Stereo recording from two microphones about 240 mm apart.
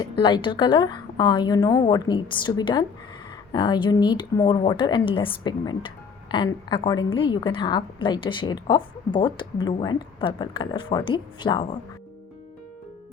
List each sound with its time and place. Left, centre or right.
0.0 s a woman's voice: centre